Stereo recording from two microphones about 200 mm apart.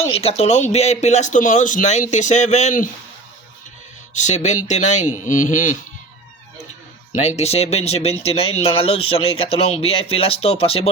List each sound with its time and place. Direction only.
0.0 s speech: 30° left (ahead or behind)
4.1 s speech: 35° left (ahead or behind)
7.2 s speech: 35° left (ahead or behind)